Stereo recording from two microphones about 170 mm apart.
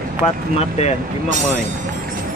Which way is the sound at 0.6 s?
40° left (ahead or behind).